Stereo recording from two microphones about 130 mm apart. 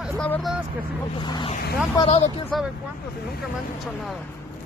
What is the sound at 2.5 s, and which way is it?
Speech, centre (ahead or behind).